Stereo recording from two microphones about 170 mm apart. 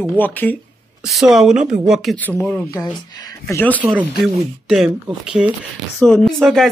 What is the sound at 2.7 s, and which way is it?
Speech, 20° left (ahead or behind).